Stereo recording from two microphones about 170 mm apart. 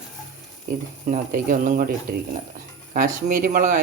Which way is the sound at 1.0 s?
55° right (ahead or behind).